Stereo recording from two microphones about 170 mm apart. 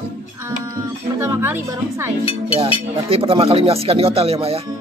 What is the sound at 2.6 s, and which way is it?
Speech, 35° right (ahead or behind).